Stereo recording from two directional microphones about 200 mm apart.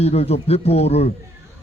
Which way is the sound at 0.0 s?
30° left (ahead or behind).